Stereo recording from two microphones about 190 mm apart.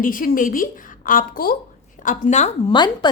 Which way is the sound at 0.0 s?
45° left (ahead or behind).